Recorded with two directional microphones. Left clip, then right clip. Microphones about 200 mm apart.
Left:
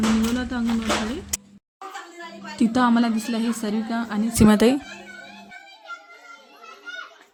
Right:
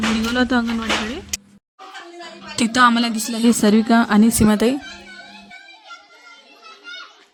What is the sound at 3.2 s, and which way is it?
Speech, centre (ahead or behind).